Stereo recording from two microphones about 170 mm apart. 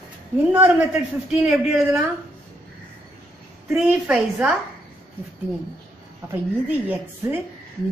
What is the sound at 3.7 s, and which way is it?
Speech, 5° right (ahead or behind).